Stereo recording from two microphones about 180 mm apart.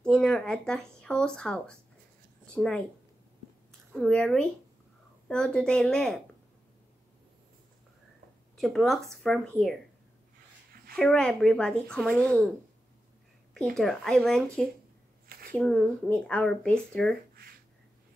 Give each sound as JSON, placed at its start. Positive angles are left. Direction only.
{"t": 0.0, "sound": "speech", "side_deg": 5}
{"t": 3.9, "sound": "speech", "side_deg": 5}
{"t": 8.5, "sound": "speech", "side_deg": 0}
{"t": 11.0, "sound": "speech", "side_deg": 5}
{"t": 13.6, "sound": "speech", "side_deg": 0}
{"t": 15.2, "sound": "a sound", "side_deg": -55}
{"t": 15.5, "sound": "speech", "side_deg": 5}